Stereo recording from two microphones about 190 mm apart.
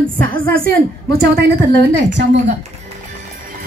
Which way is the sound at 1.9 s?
70° right (ahead or behind).